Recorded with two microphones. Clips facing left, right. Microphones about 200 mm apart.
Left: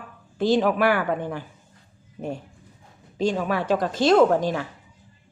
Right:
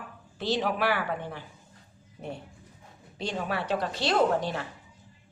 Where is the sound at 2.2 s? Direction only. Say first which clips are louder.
Left 7 dB; 90° left.